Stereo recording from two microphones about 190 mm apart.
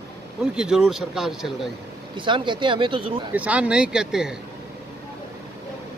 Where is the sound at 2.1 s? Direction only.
25° right (ahead or behind).